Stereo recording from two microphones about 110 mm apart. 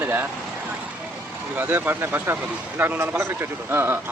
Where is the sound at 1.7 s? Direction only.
20° right (ahead or behind).